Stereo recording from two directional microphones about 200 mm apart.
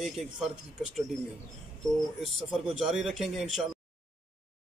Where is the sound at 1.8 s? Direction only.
Centre (ahead or behind).